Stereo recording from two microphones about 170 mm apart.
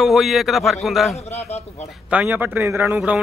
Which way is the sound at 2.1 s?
10° right (ahead or behind).